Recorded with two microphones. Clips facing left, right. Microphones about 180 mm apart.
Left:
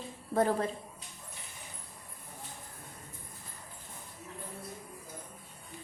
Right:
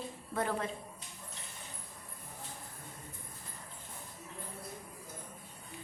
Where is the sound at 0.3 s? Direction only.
35° left (ahead or behind).